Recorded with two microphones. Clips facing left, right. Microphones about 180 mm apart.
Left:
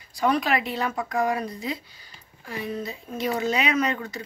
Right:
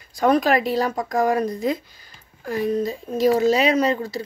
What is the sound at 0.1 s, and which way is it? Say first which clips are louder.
Speech: right 5 dB; 45° right (ahead or behind).